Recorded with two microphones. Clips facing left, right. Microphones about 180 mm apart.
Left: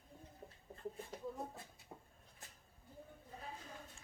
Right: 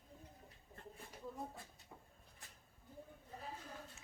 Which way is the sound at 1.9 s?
25° left (ahead or behind).